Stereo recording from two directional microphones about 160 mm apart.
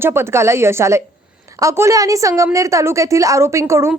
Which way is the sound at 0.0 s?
15° right (ahead or behind).